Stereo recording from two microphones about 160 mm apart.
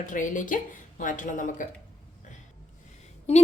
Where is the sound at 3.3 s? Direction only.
40° left (ahead or behind).